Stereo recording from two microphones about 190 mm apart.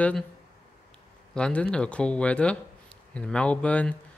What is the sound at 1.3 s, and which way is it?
Speech, 5° left (ahead or behind).